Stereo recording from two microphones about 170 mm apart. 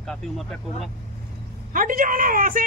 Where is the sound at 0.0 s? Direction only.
5° left (ahead or behind).